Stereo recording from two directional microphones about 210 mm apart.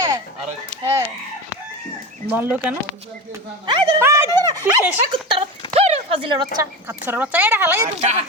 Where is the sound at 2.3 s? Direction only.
10° right (ahead or behind).